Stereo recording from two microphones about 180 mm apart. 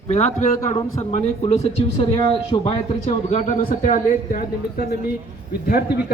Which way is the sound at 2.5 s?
25° left (ahead or behind).